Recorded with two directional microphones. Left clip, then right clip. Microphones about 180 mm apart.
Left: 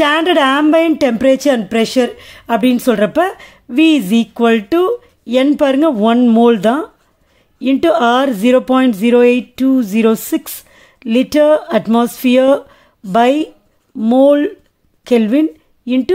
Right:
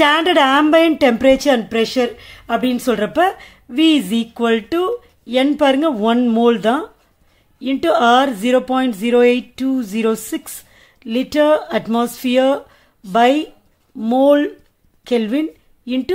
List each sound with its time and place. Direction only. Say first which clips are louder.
0.0 s a woman's voice: left 1 dB; 25° left (ahead or behind)